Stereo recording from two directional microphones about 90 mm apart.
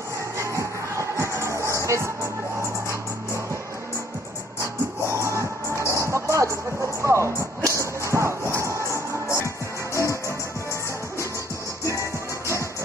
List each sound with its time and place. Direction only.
0.4 s music: 35° right (ahead or behind)
5.1 s music: 30° right (ahead or behind)
7.0 s a sound: 30° right (ahead or behind)
9.9 s music: 35° left (ahead or behind)
11.8 s music: 35° left (ahead or behind)